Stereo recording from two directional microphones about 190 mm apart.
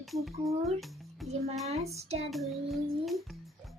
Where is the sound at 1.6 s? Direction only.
35° right (ahead or behind).